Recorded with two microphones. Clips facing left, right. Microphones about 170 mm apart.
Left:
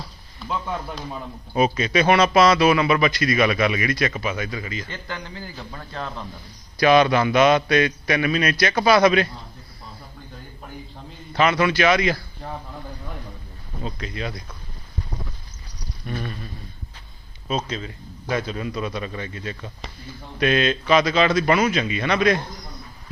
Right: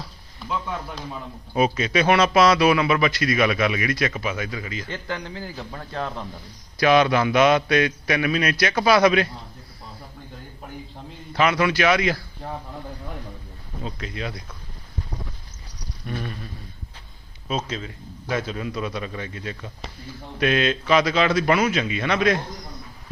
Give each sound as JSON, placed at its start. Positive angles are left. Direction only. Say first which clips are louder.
{"t": 1.5, "sound": "a man's voice", "louder": "left 1 dB", "side_deg": -5}
{"t": 4.9, "sound": "a man's voice", "louder": "right 3 dB", "side_deg": -85}
{"t": 6.7, "sound": "a man's voice", "louder": "left 1 dB", "side_deg": -5}
{"t": 11.3, "sound": "a man's voice", "louder": "left 1 dB", "side_deg": -10}
{"t": 13.8, "sound": "a man's voice", "louder": "left 1 dB", "side_deg": -5}
{"t": 17.7, "sound": "a man's voice", "louder": "left 1 dB", "side_deg": -5}